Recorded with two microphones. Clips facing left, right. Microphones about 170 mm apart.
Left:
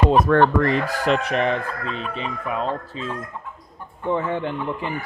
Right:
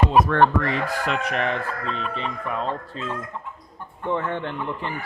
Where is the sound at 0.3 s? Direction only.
35° left (ahead or behind).